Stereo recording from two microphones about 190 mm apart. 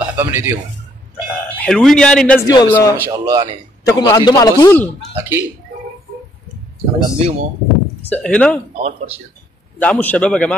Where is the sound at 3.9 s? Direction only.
20° left (ahead or behind).